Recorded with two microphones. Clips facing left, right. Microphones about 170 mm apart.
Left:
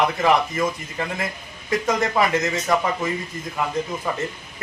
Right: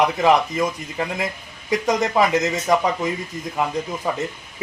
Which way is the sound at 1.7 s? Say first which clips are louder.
Right 2 dB; 15° right (ahead or behind).